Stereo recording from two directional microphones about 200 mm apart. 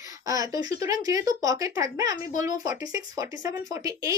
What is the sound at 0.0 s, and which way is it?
Speech, 15° right (ahead or behind).